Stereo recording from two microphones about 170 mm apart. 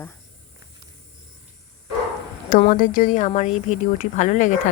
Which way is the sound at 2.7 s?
55° left (ahead or behind).